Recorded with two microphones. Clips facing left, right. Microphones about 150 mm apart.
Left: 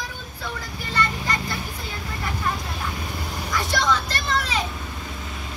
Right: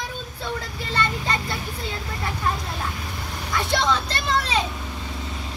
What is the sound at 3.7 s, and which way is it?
Children playing, 25° right (ahead or behind).